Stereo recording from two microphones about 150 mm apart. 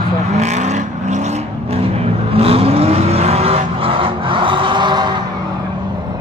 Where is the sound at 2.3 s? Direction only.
40° right (ahead or behind).